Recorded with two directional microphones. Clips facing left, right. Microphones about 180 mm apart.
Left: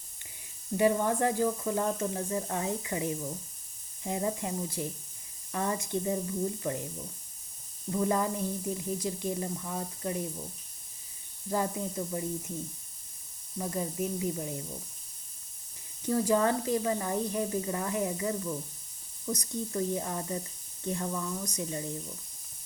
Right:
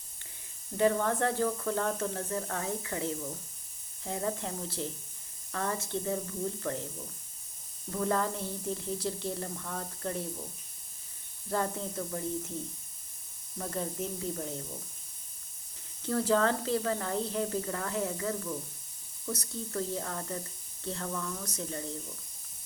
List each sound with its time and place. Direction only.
0.8 s speech: 15° left (ahead or behind)
7.9 s speech: 10° left (ahead or behind)
11.4 s speech: 10° left (ahead or behind)
13.6 s speech: 10° left (ahead or behind)
16.0 s speech: 15° left (ahead or behind)